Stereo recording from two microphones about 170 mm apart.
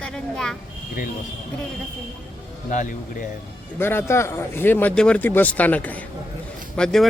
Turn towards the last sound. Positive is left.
turn(degrees=5)  # may be behind; listen again after turning